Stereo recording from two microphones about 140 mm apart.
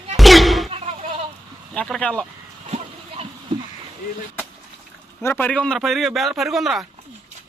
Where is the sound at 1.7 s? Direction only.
5° left (ahead or behind).